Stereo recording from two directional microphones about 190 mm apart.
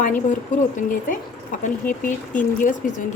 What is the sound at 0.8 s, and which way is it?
Speech, 45° left (ahead or behind).